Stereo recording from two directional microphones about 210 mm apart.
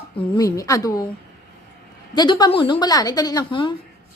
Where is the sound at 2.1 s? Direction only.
20° left (ahead or behind).